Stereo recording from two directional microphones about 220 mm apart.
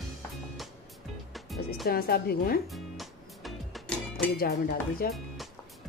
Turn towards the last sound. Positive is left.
turn(degrees=45)  # may be behind; listen again after turning